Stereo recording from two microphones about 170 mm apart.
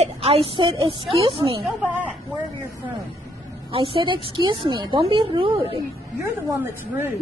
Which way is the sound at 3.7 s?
30° right (ahead or behind).